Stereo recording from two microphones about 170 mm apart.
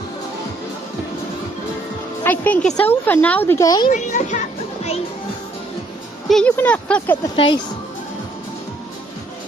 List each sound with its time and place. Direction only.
2.2 s speech: 10° left (ahead or behind)
3.8 s a child's voice: 50° left (ahead or behind)
6.2 s speech: centre (ahead or behind)
7.3 s speech: 30° left (ahead or behind)